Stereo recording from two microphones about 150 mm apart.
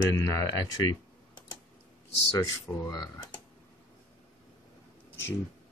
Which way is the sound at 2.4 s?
25° left (ahead or behind).